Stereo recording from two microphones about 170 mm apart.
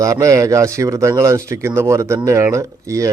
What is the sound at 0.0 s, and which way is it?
Speech, 20° right (ahead or behind).